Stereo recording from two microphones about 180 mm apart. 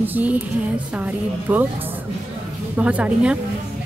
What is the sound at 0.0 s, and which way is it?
Speech, 10° right (ahead or behind).